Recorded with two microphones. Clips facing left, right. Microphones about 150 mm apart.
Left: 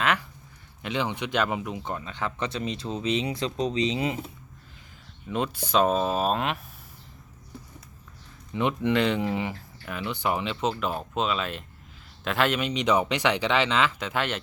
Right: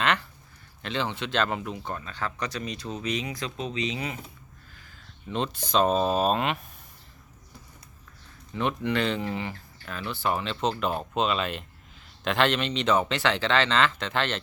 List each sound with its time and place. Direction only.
0.0 s a sound: 5° left (ahead or behind)
0.8 s speech: 15° left (ahead or behind)
5.3 s speech: 10° left (ahead or behind)
8.5 s speech: 15° left (ahead or behind)